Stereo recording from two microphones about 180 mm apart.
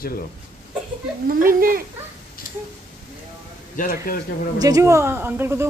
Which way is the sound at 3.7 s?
50° left (ahead or behind).